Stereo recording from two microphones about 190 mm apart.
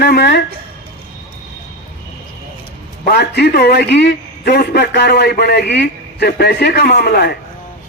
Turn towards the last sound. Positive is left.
turn(degrees=55)  # may be behind; listen again after turning